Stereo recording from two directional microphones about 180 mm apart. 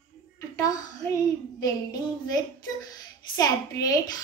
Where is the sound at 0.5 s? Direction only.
20° left (ahead or behind).